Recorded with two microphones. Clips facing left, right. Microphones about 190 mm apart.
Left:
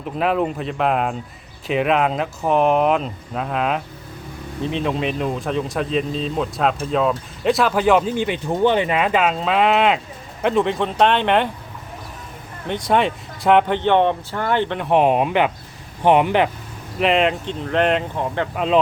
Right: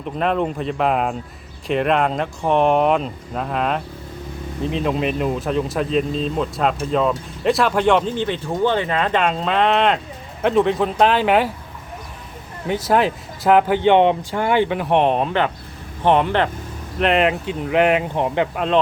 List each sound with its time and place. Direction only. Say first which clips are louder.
0.0 s speech: even; 5° left (ahead or behind)
12.6 s speech: right 1 dB; 5° right (ahead or behind); by 16.5 s 15° left (ahead or behind)
17.0 s speech: even; centre (ahead or behind)